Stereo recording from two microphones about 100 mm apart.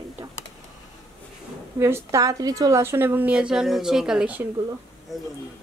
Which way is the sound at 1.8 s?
25° right (ahead or behind).